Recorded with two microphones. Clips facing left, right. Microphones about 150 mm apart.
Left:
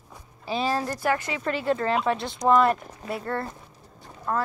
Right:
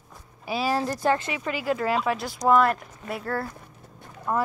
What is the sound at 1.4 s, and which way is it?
Speech, 5° right (ahead or behind).